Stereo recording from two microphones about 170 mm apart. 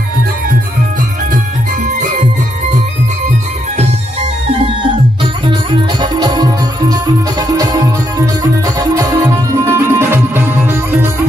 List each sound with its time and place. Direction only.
5.5 s music: 25° right (ahead or behind)